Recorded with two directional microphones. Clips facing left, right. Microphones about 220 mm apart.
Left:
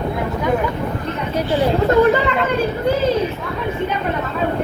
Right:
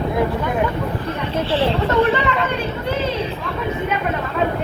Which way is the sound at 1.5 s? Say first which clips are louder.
Left 4 dB; 30° right (ahead or behind).